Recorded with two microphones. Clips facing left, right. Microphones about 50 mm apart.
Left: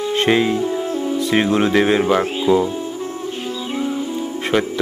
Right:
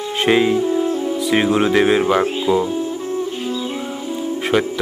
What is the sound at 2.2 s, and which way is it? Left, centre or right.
Speech, centre.